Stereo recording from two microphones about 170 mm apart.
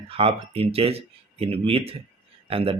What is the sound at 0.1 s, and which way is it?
Speech, 35° right (ahead or behind).